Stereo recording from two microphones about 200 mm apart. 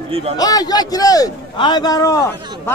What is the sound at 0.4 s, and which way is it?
A man's voice, 20° left (ahead or behind).